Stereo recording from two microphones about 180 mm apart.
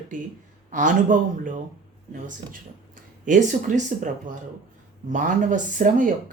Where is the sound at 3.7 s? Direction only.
45° right (ahead or behind).